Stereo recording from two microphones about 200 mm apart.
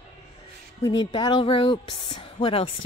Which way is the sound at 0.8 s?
20° left (ahead or behind).